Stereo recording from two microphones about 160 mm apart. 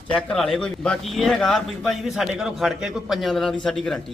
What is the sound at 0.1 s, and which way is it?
A man's voice, 5° left (ahead or behind).